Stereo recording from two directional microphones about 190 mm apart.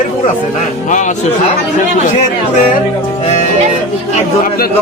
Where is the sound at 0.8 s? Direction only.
40° left (ahead or behind).